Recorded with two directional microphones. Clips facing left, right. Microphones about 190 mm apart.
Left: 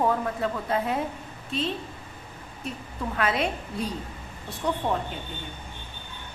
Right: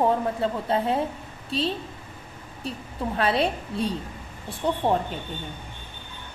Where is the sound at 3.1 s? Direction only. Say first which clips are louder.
Right 3 dB; 30° right (ahead or behind).